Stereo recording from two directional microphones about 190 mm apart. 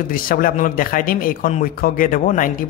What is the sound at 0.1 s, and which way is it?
Speech, 50° left (ahead or behind).